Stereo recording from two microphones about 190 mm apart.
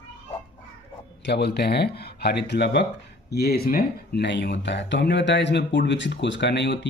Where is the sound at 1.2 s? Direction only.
60° left (ahead or behind).